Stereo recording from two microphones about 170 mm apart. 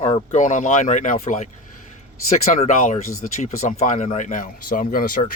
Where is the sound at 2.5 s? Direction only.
45° left (ahead or behind).